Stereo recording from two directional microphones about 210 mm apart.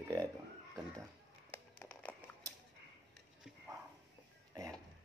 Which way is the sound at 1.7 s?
5° left (ahead or behind).